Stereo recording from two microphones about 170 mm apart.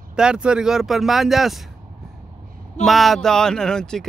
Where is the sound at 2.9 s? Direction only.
Centre (ahead or behind).